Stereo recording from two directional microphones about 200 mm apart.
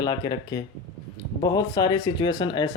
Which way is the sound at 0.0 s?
20° left (ahead or behind).